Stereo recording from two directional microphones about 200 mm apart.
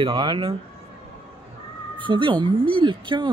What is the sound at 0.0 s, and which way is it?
Speech, 25° right (ahead or behind).